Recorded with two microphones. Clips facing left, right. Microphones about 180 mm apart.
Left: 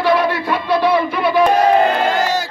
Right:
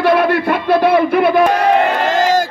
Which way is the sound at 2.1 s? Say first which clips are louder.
Right 4 dB; 90° right.